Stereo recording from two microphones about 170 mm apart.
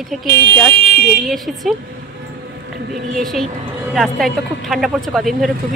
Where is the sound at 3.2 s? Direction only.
Centre (ahead or behind).